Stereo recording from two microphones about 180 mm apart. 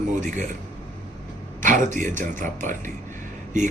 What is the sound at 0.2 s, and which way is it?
Speech, 45° right (ahead or behind).